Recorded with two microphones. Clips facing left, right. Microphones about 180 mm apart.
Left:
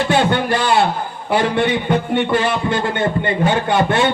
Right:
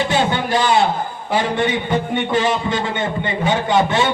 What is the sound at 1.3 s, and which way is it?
A man's voice, 60° left (ahead or behind).